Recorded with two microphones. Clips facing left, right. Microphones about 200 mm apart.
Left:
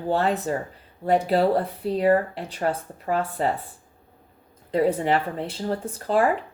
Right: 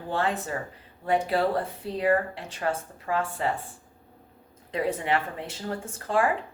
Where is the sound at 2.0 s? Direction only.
35° left (ahead or behind).